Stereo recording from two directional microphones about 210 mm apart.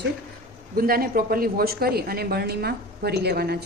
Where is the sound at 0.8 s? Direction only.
45° right (ahead or behind).